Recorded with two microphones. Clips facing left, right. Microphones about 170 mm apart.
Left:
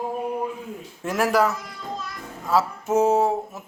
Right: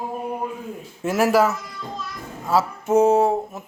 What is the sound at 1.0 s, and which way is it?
Speech, 5° right (ahead or behind).